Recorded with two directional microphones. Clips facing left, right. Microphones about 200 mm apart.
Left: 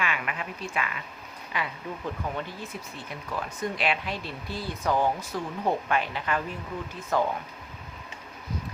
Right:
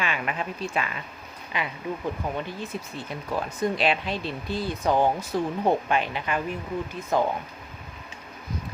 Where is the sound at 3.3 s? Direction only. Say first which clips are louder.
Right 5 dB; 30° right (ahead or behind).